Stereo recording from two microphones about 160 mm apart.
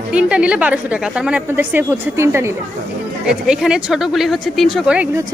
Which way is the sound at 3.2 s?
5° right (ahead or behind).